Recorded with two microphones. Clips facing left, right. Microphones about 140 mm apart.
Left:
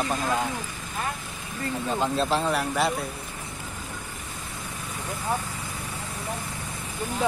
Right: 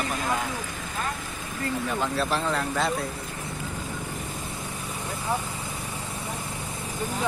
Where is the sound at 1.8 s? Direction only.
25° left (ahead or behind).